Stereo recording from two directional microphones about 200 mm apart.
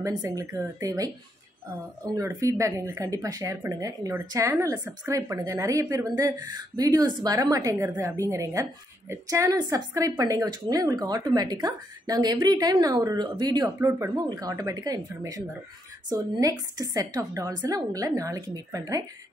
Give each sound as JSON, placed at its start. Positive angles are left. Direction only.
{"t": 0.2, "sound": "speech", "side_deg": -15}
{"t": 2.1, "sound": "a woman's voice", "side_deg": -15}